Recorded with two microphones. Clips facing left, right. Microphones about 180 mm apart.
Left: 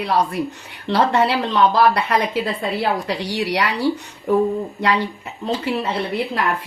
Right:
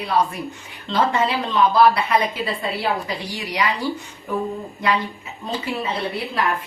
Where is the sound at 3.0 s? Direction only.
75° left (ahead or behind).